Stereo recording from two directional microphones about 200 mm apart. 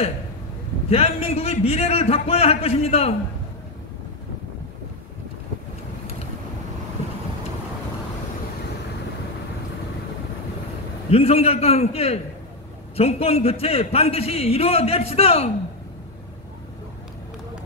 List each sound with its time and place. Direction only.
0.8 s a man's voice: 30° left (ahead or behind)
11.1 s a man's voice: 30° left (ahead or behind)